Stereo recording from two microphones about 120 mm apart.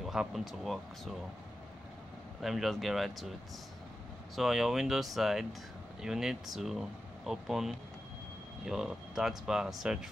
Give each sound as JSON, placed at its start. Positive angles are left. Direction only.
{"t": 0.0, "sound": "speech", "side_deg": 0}
{"t": 2.4, "sound": "speech", "side_deg": 0}
{"t": 4.4, "sound": "speech", "side_deg": -5}